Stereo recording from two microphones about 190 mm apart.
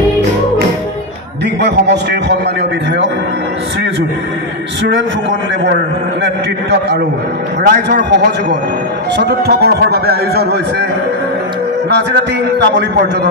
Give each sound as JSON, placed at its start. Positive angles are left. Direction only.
{"t": 1.6, "sound": "a man's voice", "side_deg": -60}
{"t": 6.2, "sound": "a man's voice", "side_deg": -60}
{"t": 11.9, "sound": "a man's voice", "side_deg": -60}